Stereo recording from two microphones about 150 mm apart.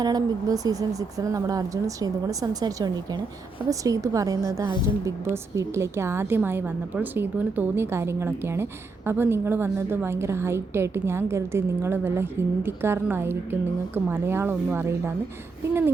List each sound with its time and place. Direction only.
0.0 s a woman's voice: 25° right (ahead or behind)